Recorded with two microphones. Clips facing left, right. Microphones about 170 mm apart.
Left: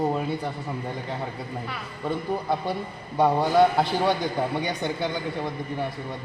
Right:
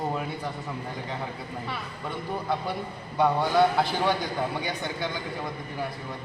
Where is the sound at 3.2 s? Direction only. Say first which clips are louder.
Left 3 dB; 30° left (ahead or behind).